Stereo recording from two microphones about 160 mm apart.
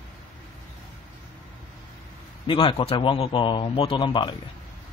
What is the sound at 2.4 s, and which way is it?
A man's voice, 30° left (ahead or behind).